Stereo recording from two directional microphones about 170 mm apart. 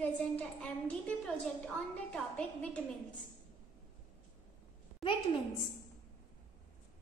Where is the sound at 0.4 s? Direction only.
5° left (ahead or behind).